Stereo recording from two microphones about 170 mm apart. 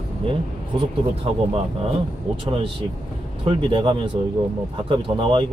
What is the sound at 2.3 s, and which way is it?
Speech, 30° right (ahead or behind).